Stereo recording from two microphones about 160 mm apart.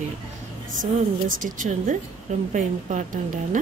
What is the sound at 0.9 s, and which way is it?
Speech, 55° right (ahead or behind).